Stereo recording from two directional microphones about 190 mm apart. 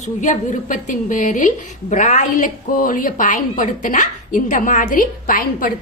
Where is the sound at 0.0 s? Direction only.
40° left (ahead or behind).